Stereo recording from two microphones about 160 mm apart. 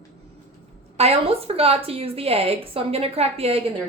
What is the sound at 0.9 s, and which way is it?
A woman's voice, 40° right (ahead or behind).